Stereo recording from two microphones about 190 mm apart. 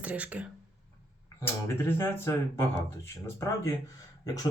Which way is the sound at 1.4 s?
15° left (ahead or behind).